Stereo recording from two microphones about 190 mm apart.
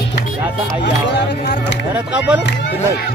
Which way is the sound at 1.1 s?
65° left (ahead or behind).